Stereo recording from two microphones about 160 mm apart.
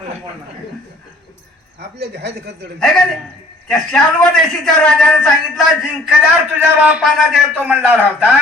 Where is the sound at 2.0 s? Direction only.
90° right.